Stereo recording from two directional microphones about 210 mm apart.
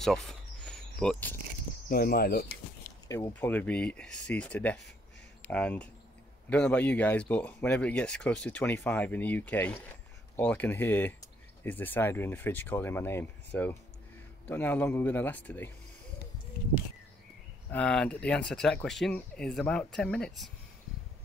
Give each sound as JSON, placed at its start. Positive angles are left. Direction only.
{"t": 0.0, "sound": "a sound", "side_deg": 0}
{"t": 1.9, "sound": "speech", "side_deg": 45}
{"t": 3.1, "sound": "speech", "side_deg": 10}
{"t": 17.6, "sound": "speech", "side_deg": 5}